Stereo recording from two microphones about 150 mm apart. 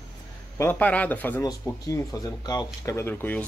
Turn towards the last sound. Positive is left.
turn(degrees=10)  # may be behind; listen again after turning